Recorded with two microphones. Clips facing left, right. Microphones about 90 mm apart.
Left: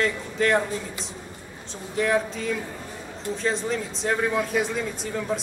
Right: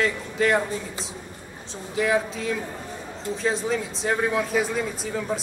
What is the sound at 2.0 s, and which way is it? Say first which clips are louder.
Speech: even; centre (ahead or behind).